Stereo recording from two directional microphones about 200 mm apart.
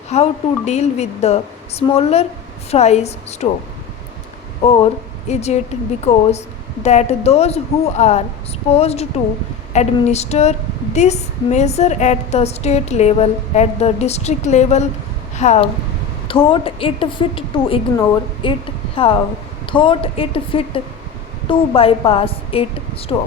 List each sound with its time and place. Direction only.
0.1 s a woman's voice: 35° left (ahead or behind)
4.6 s a woman's voice: 30° left (ahead or behind)